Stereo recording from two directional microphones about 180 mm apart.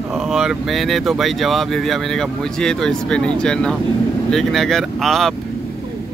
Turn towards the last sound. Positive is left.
turn(degrees=0)  # may be behind; listen again after turning